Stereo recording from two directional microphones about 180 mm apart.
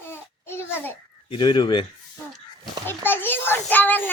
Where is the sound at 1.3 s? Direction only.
25° left (ahead or behind).